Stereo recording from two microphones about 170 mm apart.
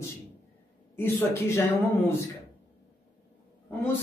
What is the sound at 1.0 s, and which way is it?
Speech, 15° left (ahead or behind).